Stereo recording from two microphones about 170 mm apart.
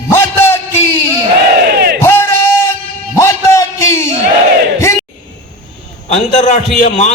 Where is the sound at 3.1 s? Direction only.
15° left (ahead or behind).